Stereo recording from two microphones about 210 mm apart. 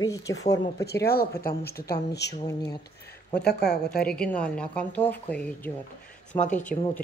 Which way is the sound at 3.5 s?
50° left (ahead or behind).